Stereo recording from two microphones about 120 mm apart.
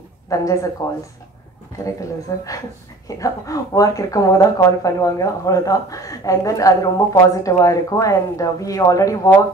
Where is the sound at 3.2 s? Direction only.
30° left (ahead or behind).